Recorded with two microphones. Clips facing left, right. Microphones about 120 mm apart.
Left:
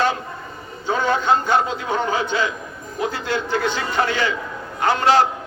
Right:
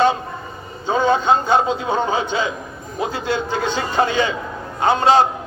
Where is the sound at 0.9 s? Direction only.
20° right (ahead or behind).